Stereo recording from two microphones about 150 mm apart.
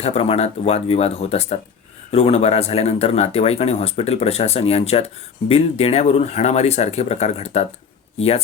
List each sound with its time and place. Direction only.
0.0 s speech: 40° left (ahead or behind)